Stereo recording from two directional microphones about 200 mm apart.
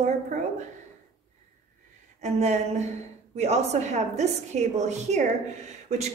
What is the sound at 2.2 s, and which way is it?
A woman's voice, 35° right (ahead or behind).